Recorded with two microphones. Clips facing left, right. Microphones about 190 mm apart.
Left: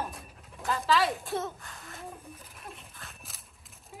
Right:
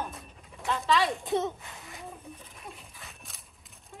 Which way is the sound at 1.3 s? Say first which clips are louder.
Right 5 dB; 20° right (ahead or behind).